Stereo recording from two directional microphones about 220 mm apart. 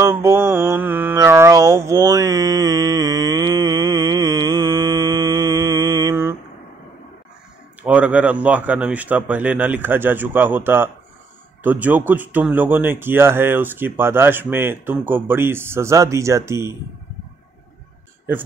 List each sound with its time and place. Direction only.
0.0 s mantra: 10° right (ahead or behind)
7.8 s speech: 5° right (ahead or behind)